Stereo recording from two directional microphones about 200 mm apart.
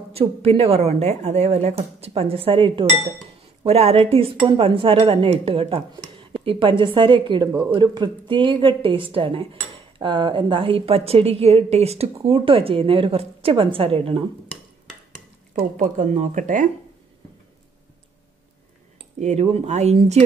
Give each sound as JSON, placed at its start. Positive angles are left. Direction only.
{"t": 0.1, "sound": "a woman's voice", "side_deg": -30}
{"t": 15.8, "sound": "speech", "side_deg": -40}
{"t": 19.1, "sound": "speech", "side_deg": -35}